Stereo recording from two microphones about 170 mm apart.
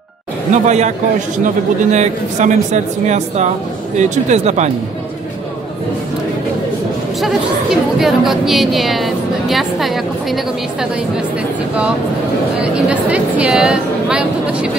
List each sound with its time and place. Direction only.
0.5 s a man's voice: 45° right (ahead or behind)
7.2 s a woman's voice: centre (ahead or behind)
12.8 s a woman's voice: 5° right (ahead or behind)